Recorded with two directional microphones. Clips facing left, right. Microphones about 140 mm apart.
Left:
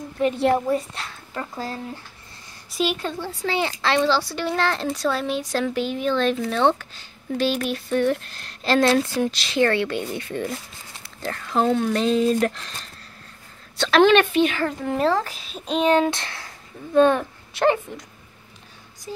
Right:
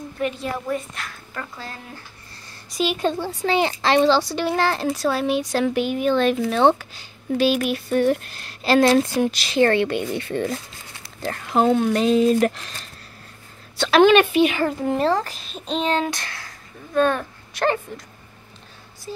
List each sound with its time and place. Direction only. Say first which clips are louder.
0.2 s a woman's voice: left 6 dB; 25° left (ahead or behind)
3.0 s speech: right 5 dB; 20° right (ahead or behind)
4.5 s speech: even; 10° right (ahead or behind)
9.5 s speech: right 3 dB; 40° right (ahead or behind)
9.8 s speech: right 3 dB; 20° right (ahead or behind)
10.2 s speech: right 3 dB; 60° right (ahead or behind)
11.4 s speech: right 3 dB; 15° right (ahead or behind)
13.7 s speech: right 2 dB; 5° right (ahead or behind)
15.0 s speech: left 3 dB; centre (ahead or behind); by 18.0 s 15° left (ahead or behind)
19.1 s a sound: right 1 dB; 15° left (ahead or behind)